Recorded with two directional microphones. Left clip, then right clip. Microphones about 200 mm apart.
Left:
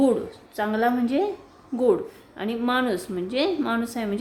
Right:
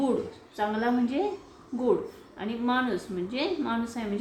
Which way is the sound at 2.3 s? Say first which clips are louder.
Left 4 dB; 55° left (ahead or behind).